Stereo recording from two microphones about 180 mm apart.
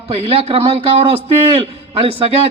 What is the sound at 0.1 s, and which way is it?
A man's voice, 35° right (ahead or behind).